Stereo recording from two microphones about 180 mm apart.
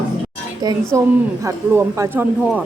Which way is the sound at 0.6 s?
20° right (ahead or behind).